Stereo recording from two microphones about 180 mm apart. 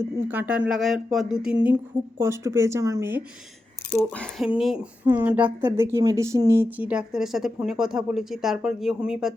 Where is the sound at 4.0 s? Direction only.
5° left (ahead or behind).